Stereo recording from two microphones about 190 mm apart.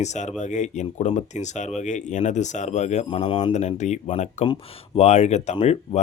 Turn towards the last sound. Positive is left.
turn(degrees=35)  # may be behind; listen again after turning